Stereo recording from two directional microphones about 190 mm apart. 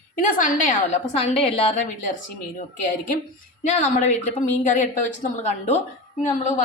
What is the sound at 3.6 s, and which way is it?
A woman's voice, 40° left (ahead or behind).